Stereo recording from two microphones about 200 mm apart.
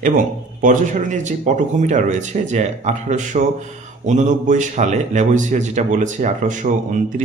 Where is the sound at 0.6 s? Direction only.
40° right (ahead or behind).